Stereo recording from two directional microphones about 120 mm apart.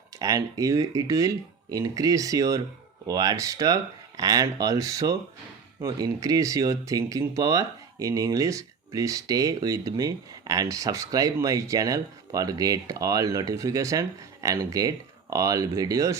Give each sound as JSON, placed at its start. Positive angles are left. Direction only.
{"t": 0.2, "sound": "speech", "side_deg": -30}